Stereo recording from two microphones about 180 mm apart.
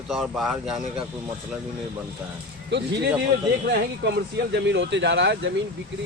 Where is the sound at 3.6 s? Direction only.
65° right (ahead or behind); by 5.5 s 80° right.